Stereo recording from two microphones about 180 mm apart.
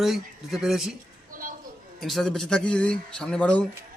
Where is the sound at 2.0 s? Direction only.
Centre (ahead or behind).